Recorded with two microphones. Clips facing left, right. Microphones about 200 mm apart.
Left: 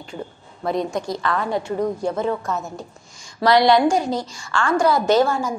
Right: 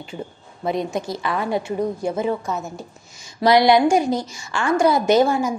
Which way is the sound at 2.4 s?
Centre (ahead or behind).